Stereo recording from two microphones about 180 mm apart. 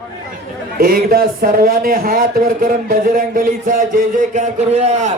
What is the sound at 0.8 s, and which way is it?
A man's voice, 55° right (ahead or behind).